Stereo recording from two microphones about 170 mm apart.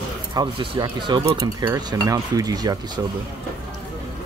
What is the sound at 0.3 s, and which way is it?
Speech, 25° right (ahead or behind).